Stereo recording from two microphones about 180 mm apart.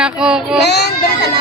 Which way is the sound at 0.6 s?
65° left (ahead or behind).